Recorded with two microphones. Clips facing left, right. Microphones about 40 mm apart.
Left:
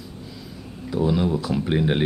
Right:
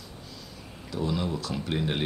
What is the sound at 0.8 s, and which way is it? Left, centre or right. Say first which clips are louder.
Speech: left 8 dB; centre.